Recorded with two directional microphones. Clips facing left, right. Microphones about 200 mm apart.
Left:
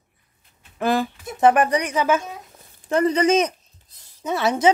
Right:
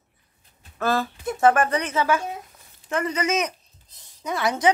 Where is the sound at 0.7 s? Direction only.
15° left (ahead or behind).